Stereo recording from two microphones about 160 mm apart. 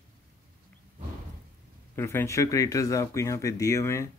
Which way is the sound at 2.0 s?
15° left (ahead or behind).